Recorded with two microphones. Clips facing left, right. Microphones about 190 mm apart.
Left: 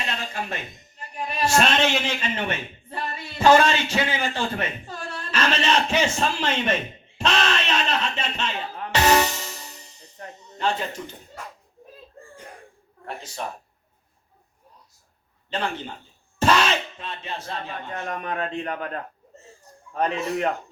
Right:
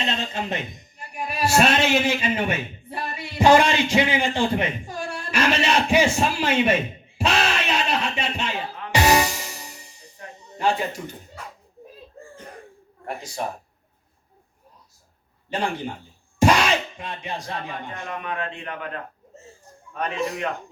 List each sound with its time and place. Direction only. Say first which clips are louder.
0.0 s a man's voice: right 4 dB; 25° right (ahead or behind)
7.2 s music: right 1 dB; 10° right (ahead or behind)
15.4 s a man's voice: right 2 dB; 10° right (ahead or behind)
18.1 s a man's voice: left 2 dB; 40° left (ahead or behind)
19.9 s a man's voice: left 2 dB; 30° left (ahead or behind)